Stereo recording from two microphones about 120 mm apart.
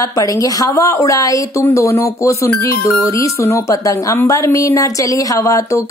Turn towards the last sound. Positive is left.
turn(degrees=25)  # may be behind; listen again after turning